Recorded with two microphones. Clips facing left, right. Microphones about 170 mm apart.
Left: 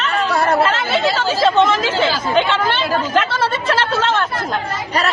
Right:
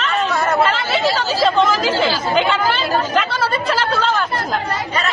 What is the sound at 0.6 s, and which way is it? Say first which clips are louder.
Chatter: left 1 dB; centre (ahead or behind).